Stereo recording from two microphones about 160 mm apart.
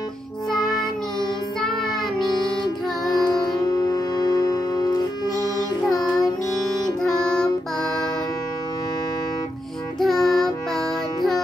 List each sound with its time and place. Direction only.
0.5 s music: centre (ahead or behind)
3.3 s music: 25° left (ahead or behind)
7.0 s music: 5° left (ahead or behind)
9.9 s music: centre (ahead or behind)